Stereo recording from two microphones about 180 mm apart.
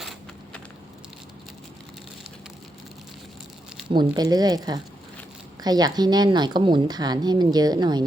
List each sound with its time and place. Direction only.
3.8 s a woman's voice: 25° right (ahead or behind)